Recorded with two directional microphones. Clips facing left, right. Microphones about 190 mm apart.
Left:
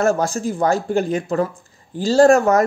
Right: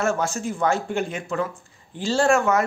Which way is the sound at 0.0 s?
35° left (ahead or behind).